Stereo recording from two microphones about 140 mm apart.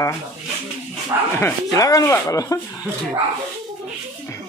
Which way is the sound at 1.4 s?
25° left (ahead or behind).